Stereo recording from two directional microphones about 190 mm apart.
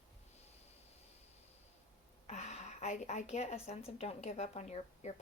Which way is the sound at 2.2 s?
35° left (ahead or behind).